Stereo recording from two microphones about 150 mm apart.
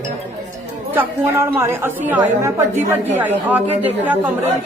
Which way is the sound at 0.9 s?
15° right (ahead or behind).